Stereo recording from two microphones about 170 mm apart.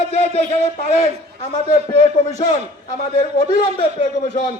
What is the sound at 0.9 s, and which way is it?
Speech, 40° left (ahead or behind).